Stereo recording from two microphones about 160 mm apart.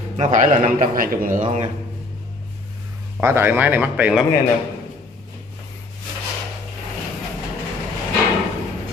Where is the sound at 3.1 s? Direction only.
15° right (ahead or behind).